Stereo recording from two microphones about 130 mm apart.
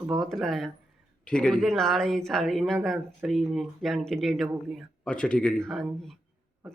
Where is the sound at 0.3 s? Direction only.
Centre (ahead or behind).